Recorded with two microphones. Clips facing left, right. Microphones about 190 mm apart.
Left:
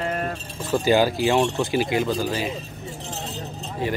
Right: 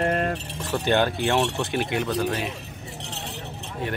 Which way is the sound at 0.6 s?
Centre (ahead or behind).